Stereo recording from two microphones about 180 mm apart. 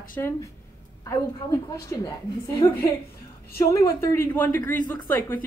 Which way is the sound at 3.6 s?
15° left (ahead or behind).